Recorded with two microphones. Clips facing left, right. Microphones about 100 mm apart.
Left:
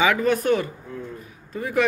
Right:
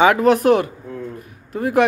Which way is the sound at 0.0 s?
65° right (ahead or behind).